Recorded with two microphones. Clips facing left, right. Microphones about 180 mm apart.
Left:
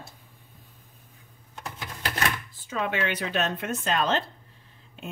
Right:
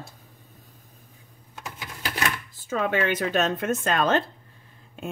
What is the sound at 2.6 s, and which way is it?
A woman's voice, 45° right (ahead or behind).